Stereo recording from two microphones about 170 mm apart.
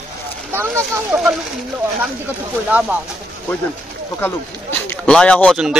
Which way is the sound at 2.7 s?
5° right (ahead or behind).